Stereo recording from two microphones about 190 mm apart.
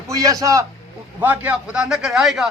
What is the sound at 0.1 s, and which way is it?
A man's voice, 20° right (ahead or behind).